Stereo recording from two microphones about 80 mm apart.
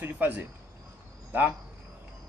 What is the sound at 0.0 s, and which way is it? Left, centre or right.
Speech, right.